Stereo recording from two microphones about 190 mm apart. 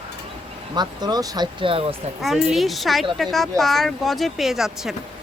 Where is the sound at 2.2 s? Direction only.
Centre (ahead or behind).